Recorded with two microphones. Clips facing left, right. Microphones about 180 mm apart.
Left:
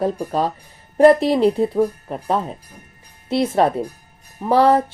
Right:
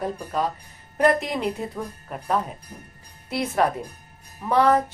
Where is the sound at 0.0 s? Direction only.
30° left (ahead or behind).